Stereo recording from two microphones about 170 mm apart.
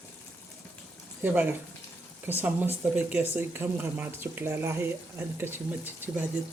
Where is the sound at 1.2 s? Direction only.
10° right (ahead or behind).